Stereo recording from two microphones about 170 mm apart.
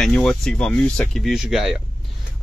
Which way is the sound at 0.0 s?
Centre (ahead or behind).